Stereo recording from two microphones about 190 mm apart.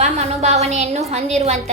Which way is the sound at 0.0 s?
35° right (ahead or behind).